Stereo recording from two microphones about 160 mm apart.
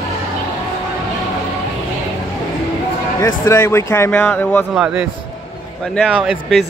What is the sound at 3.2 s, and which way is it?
Speech, 20° left (ahead or behind).